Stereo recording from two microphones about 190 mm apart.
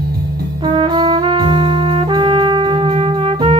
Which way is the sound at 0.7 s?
25° right (ahead or behind).